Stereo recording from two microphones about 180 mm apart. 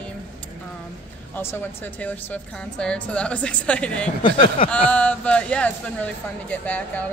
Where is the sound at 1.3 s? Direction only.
10° left (ahead or behind).